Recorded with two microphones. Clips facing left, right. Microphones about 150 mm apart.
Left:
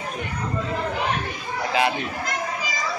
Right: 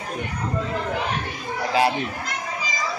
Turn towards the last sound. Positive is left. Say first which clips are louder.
# right 2 dB
turn(degrees=-35)  # may be behind; listen again after turning